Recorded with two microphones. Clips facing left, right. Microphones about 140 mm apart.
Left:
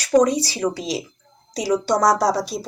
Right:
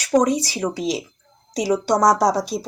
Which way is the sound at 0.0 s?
20° right (ahead or behind).